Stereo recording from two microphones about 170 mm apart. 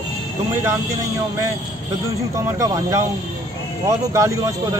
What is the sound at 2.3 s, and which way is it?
Speech, 20° right (ahead or behind).